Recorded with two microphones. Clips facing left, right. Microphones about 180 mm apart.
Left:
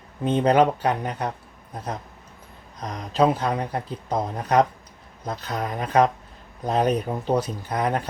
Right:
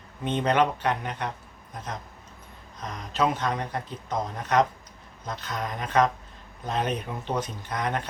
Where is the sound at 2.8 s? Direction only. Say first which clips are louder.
Left 6 dB; 35° left (ahead or behind).